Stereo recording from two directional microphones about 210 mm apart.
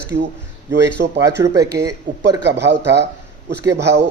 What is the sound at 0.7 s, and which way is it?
Speech, 55° right (ahead or behind).